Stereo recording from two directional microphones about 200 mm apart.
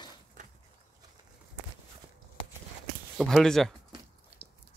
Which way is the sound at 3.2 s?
Centre (ahead or behind).